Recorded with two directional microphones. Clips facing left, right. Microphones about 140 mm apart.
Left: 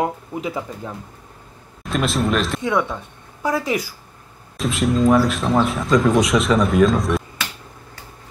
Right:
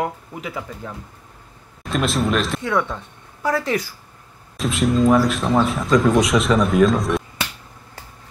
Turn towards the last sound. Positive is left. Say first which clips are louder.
# even
turn(degrees=0)  # may be behind; listen again after turning